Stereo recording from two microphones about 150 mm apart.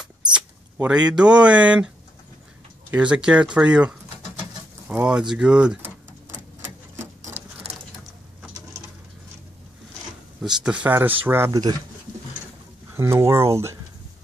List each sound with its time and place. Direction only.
0.0 s speech: 5° right (ahead or behind)
2.9 s speech: 10° right (ahead or behind)
10.4 s speech: 5° right (ahead or behind)
12.9 s speech: 20° right (ahead or behind)